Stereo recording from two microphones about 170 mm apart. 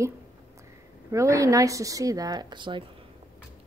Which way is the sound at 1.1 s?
20° right (ahead or behind).